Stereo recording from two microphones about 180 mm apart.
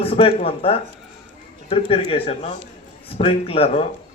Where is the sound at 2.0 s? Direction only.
30° left (ahead or behind).